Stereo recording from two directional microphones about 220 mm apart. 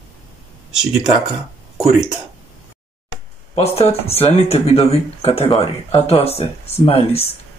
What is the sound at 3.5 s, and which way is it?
Speech, 30° left (ahead or behind).